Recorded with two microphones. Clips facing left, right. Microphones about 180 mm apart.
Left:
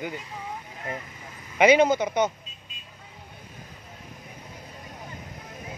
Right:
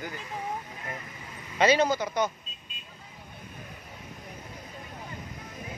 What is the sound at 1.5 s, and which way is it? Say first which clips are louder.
Speech: left 5 dB; 15° left (ahead or behind).